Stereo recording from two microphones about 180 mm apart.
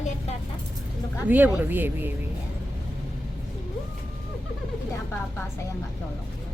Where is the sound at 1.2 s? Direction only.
10° right (ahead or behind).